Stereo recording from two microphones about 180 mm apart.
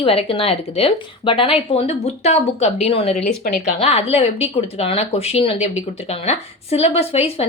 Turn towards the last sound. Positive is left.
turn(degrees=35)  # may be behind; listen again after turning